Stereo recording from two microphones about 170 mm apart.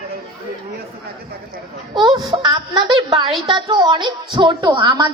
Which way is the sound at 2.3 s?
25° right (ahead or behind).